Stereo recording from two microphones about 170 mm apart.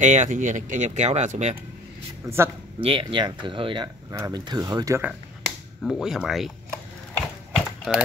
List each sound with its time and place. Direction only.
0.0 s speech: 45° right (ahead or behind)
2.2 s a man's voice: 15° right (ahead or behind)
2.8 s speech: 30° right (ahead or behind)
5.0 s speech: centre (ahead or behind)
7.2 s a sound: centre (ahead or behind)